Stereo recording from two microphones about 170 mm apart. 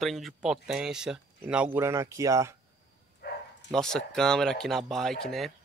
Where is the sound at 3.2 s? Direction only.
70° left (ahead or behind).